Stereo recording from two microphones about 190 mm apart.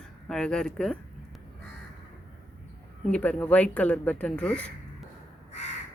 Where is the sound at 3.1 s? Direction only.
5° left (ahead or behind).